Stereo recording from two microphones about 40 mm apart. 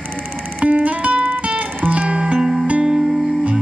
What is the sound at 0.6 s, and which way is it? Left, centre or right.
Music, right.